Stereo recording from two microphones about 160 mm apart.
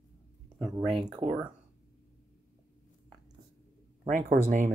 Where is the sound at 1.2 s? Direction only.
50° right (ahead or behind).